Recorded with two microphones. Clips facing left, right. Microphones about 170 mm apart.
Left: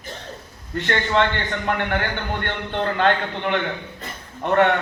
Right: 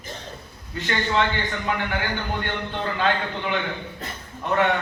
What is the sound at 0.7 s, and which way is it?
A man's voice, 60° left (ahead or behind).